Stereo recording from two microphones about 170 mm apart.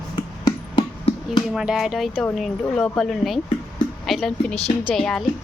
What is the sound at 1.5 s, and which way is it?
Speech, 5° right (ahead or behind).